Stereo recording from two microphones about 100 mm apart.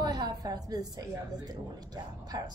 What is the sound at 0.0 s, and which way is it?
A woman's voice, 40° right (ahead or behind).